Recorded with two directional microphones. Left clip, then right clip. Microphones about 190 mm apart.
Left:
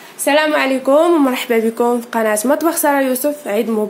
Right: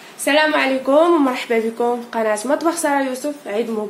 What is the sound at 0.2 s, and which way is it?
A woman's voice, 20° left (ahead or behind).